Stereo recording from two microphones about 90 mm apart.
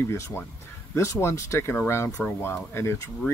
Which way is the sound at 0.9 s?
30° left (ahead or behind).